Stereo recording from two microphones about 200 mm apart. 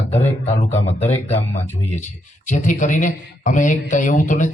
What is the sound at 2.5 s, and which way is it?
Speech, 40° left (ahead or behind).